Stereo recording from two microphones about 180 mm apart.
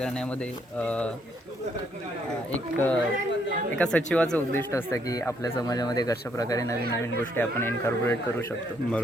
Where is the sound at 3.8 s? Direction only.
5° left (ahead or behind).